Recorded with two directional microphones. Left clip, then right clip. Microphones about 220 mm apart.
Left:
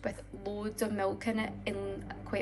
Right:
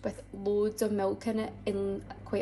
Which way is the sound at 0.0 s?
15° right (ahead or behind).